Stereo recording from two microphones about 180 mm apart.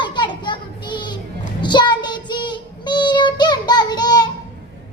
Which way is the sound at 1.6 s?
25° left (ahead or behind).